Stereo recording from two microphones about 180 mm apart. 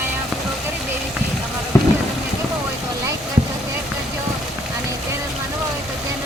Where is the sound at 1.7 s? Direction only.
15° left (ahead or behind).